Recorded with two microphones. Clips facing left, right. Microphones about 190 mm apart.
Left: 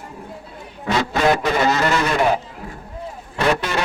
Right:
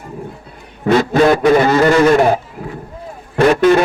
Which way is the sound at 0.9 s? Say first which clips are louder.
Right 7 dB; 55° right (ahead or behind).